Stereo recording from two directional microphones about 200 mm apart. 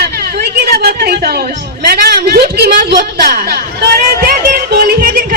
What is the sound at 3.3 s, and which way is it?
Music, 50° right (ahead or behind).